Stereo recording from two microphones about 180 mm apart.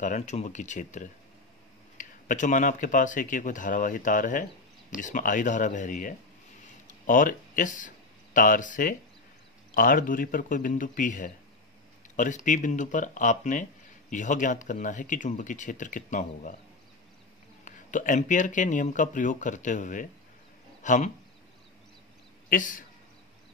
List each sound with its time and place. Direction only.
0.0 s speech: 40° left (ahead or behind)
17.6 s speech: 45° left (ahead or behind)
22.5 s speech: 50° left (ahead or behind)